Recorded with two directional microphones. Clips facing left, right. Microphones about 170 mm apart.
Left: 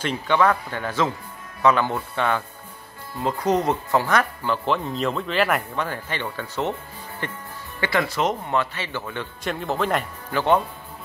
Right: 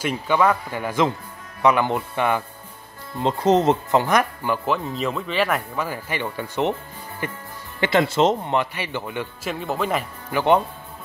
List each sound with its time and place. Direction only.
0.0 s speech: 10° right (ahead or behind)
3.2 s speech: 25° right (ahead or behind)
4.6 s speech: centre (ahead or behind)
7.8 s speech: 25° right (ahead or behind); by 10.0 s centre (ahead or behind)
10.3 s speech: 15° right (ahead or behind)